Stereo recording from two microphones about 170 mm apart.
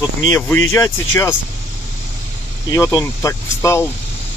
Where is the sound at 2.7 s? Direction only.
20° left (ahead or behind).